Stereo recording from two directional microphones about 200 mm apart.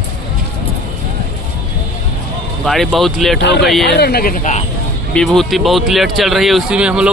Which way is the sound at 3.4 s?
55° left (ahead or behind).